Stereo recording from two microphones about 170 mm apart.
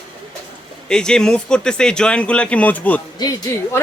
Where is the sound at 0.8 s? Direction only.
5° left (ahead or behind).